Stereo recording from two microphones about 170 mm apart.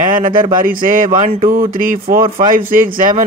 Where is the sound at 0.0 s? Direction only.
55° right (ahead or behind).